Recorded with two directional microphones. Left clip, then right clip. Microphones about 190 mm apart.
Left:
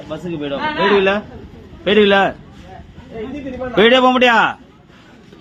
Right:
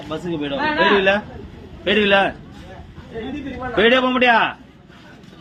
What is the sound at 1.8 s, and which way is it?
Speech, 35° left (ahead or behind).